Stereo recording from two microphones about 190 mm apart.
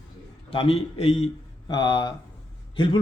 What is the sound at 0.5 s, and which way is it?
A man's voice, 30° left (ahead or behind).